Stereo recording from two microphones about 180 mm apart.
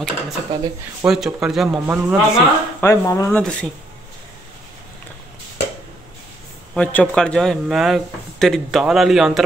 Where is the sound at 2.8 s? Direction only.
15° left (ahead or behind).